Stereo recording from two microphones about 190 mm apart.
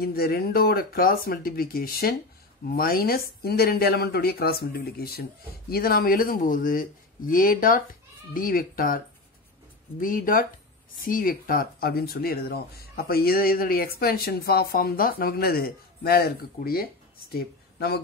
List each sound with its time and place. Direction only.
0.0 s speech: 55° left (ahead or behind)